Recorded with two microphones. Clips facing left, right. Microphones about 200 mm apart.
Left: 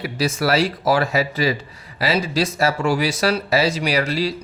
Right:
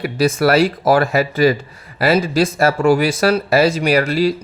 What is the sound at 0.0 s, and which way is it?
Speech, 55° right (ahead or behind).